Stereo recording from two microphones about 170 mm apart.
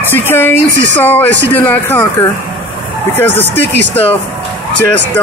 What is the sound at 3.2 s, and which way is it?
Speech, 10° left (ahead or behind).